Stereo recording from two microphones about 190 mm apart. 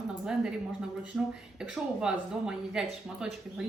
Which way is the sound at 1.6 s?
5° right (ahead or behind).